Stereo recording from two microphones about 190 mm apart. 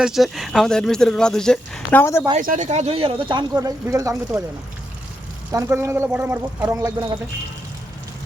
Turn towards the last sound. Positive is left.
turn(degrees=-10)  # may be behind; listen again after turning